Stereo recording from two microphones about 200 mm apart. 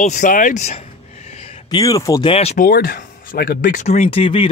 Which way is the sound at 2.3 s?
30° left (ahead or behind).